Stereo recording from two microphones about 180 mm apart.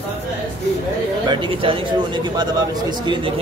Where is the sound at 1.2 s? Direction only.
30° right (ahead or behind).